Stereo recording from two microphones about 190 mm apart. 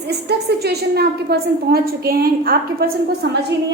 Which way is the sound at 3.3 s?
60° right (ahead or behind).